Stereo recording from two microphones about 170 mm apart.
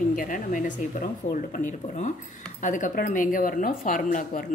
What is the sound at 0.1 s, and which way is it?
Speech, 50° left (ahead or behind).